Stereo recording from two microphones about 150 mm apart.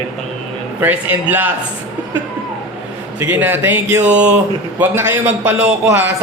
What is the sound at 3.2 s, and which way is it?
A man's voice, 15° right (ahead or behind).